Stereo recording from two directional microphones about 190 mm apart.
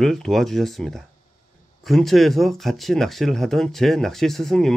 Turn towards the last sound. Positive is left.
turn(degrees=0)  # may be behind; listen again after turning